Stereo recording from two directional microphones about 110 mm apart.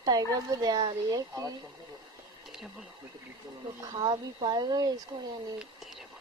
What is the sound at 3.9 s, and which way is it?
Speech, 40° right (ahead or behind).